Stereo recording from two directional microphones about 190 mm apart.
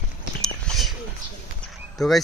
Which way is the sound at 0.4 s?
Centre (ahead or behind).